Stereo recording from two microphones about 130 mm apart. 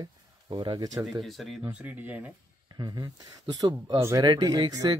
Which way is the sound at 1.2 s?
Centre (ahead or behind).